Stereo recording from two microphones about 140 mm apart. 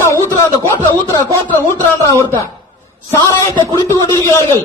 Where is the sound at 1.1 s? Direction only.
25° right (ahead or behind).